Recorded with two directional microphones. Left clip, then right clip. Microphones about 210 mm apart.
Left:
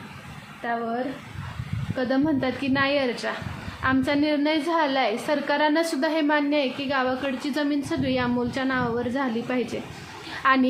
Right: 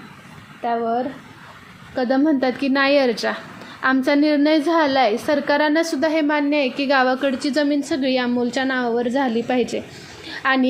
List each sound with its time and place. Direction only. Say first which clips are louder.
2.0 s a woman's voice: right 6 dB; 20° right (ahead or behind)